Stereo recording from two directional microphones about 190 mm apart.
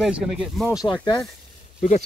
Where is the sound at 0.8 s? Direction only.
25° left (ahead or behind).